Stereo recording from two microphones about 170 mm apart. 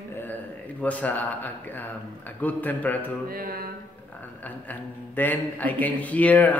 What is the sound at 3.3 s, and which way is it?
Mantra, 60° right (ahead or behind).